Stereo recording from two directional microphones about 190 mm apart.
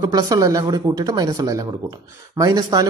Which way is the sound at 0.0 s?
20° right (ahead or behind).